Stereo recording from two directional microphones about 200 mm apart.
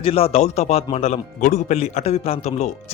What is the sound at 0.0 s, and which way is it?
Speech, 30° left (ahead or behind).